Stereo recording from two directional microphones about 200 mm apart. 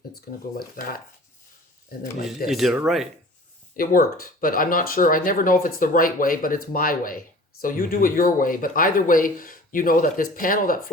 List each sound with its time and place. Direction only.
0.1 s speech: 50° left (ahead or behind)
2.5 s speech: centre (ahead or behind)
3.8 s speech: 45° left (ahead or behind)